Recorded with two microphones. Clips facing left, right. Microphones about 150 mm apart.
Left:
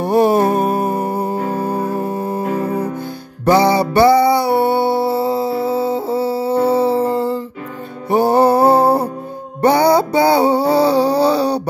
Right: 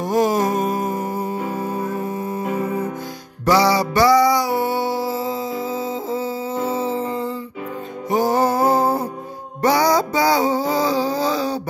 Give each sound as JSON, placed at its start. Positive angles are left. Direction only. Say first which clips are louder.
{"t": 0.0, "sound": "music", "louder": "left 5 dB", "side_deg": 60}
{"t": 3.4, "sound": "music", "louder": "left 4 dB", "side_deg": 55}
{"t": 8.1, "sound": "music", "louder": "left 6 dB", "side_deg": 60}
{"t": 9.8, "sound": "music", "louder": "left 6 dB", "side_deg": 30}
{"t": 10.4, "sound": "a sound", "louder": "left 6 dB", "side_deg": 65}